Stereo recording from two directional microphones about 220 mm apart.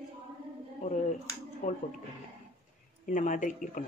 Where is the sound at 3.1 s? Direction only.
35° left (ahead or behind).